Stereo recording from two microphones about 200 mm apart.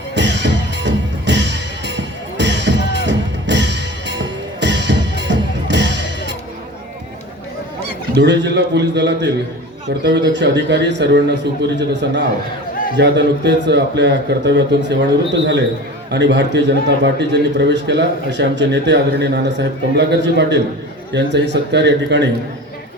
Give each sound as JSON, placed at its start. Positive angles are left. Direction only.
{"t": 0.1, "sound": "music", "side_deg": -60}
{"t": 8.1, "sound": "a man's voice", "side_deg": -60}
{"t": 13.0, "sound": "a man's voice", "side_deg": -60}